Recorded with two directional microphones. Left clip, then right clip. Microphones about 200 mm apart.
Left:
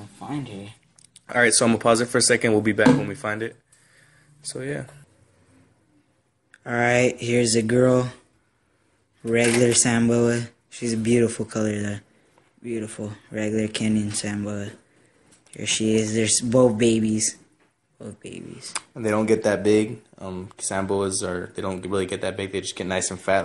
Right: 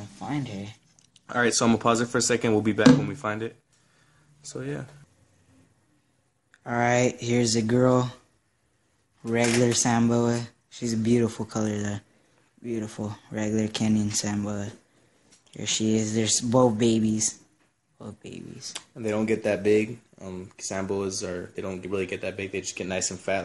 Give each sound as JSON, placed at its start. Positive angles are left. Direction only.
{"t": 0.2, "sound": "speech", "side_deg": -55}
{"t": 0.9, "sound": "speech", "side_deg": -5}
{"t": 6.6, "sound": "speech", "side_deg": -10}
{"t": 7.0, "sound": "speech", "side_deg": -25}
{"t": 9.3, "sound": "speech", "side_deg": -20}
{"t": 9.8, "sound": "speech", "side_deg": -10}
{"t": 10.4, "sound": "speech", "side_deg": -20}
{"t": 18.7, "sound": "speech", "side_deg": 5}